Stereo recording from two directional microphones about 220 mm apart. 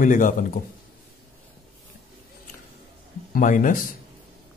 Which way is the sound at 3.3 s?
35° left (ahead or behind).